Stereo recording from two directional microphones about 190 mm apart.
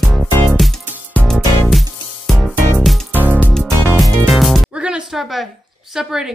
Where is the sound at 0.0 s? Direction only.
5° left (ahead or behind).